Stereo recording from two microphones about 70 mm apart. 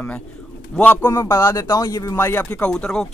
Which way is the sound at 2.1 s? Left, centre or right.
Left.